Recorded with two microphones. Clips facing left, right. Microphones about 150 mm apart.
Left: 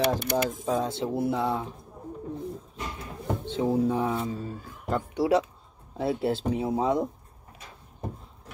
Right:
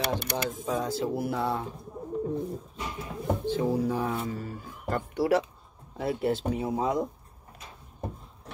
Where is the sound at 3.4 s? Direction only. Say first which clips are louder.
Left 3 dB; 20° left (ahead or behind).